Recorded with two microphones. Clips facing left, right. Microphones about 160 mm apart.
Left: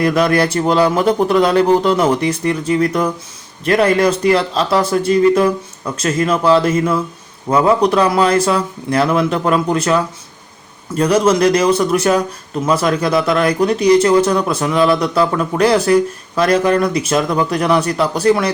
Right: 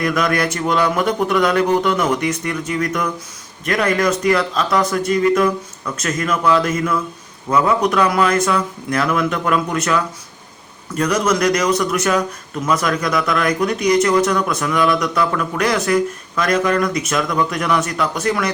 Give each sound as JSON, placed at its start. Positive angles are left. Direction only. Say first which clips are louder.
{"t": 0.0, "sound": "speech", "louder": "left 5 dB", "side_deg": 30}